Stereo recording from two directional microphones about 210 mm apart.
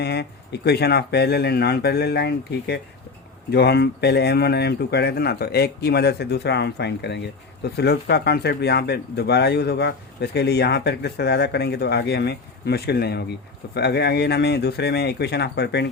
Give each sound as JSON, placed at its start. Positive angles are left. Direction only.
{"t": 0.0, "sound": "speech", "side_deg": 50}